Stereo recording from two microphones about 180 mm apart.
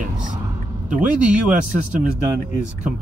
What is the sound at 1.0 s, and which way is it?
Speech, 5° right (ahead or behind).